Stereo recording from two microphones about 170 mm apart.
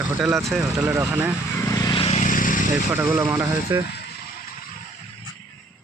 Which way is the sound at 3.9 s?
75° left (ahead or behind).